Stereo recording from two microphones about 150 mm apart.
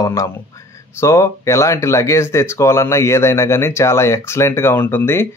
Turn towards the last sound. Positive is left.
turn(degrees=15)  # may be behind; listen again after turning